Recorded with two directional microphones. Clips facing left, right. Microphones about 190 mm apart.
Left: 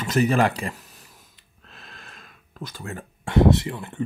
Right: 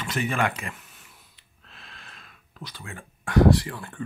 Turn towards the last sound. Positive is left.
turn(degrees=20)  # may be behind; listen again after turning